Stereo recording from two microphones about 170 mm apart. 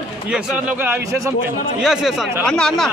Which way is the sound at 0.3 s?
5° right (ahead or behind).